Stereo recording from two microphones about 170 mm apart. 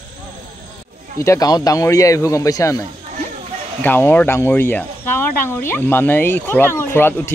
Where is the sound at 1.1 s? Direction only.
20° left (ahead or behind).